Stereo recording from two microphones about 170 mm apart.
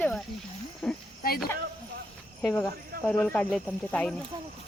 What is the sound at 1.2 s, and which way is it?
Speech, 60° left (ahead or behind).